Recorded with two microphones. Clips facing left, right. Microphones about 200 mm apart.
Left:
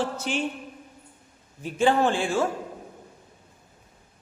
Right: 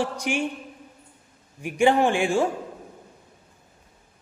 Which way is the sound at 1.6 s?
15° right (ahead or behind).